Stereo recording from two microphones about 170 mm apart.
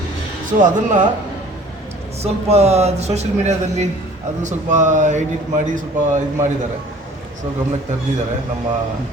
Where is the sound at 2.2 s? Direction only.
40° right (ahead or behind).